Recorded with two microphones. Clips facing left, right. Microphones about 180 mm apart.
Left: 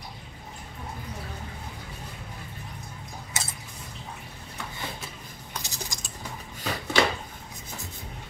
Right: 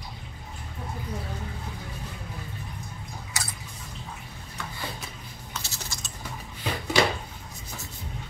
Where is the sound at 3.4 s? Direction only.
25° left (ahead or behind).